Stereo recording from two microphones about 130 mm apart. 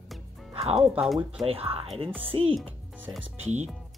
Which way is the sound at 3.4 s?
60° right (ahead or behind).